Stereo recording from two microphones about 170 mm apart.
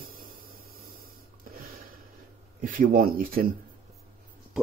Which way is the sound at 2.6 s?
55° right (ahead or behind).